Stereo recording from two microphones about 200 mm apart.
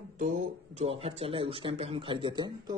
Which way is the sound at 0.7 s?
30° right (ahead or behind).